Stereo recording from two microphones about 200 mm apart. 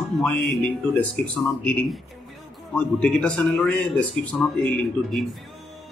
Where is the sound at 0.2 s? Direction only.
5° left (ahead or behind).